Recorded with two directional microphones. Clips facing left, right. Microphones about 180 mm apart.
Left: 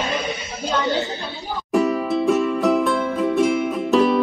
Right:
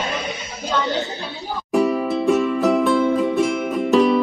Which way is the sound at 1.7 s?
Centre (ahead or behind).